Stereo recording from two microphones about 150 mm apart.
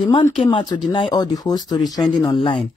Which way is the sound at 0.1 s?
35° left (ahead or behind).